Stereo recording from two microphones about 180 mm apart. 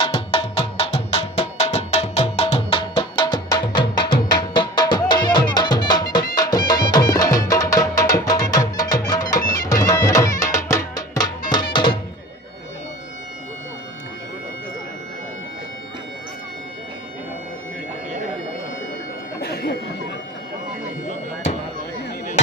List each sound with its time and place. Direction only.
0.0 s music: 35° left (ahead or behind)
4.0 s music: 65° left (ahead or behind)
4.4 s music: 25° left (ahead or behind)
19.4 s a sound: 60° left (ahead or behind)